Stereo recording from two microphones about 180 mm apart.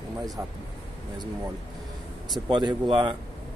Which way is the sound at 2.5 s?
25° right (ahead or behind).